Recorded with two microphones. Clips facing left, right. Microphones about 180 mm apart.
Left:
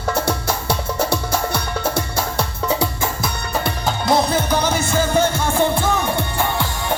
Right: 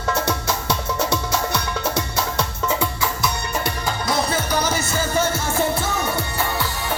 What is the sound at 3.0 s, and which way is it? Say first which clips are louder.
Music: even; 55° left (ahead or behind).